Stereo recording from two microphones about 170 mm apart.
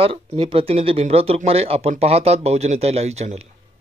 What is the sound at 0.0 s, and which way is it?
Speech, 35° right (ahead or behind).